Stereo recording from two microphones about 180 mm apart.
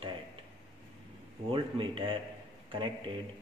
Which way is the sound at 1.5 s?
30° right (ahead or behind).